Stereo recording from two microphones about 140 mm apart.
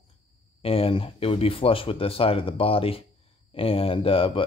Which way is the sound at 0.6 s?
45° left (ahead or behind).